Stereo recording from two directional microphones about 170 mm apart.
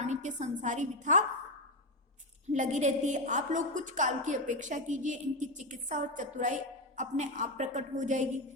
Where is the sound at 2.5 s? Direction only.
45° right (ahead or behind).